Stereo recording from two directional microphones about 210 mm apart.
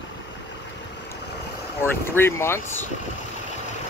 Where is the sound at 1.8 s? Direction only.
10° left (ahead or behind).